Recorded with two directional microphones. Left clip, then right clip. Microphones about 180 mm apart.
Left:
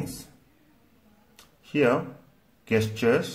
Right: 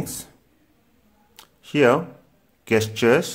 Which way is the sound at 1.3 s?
30° right (ahead or behind).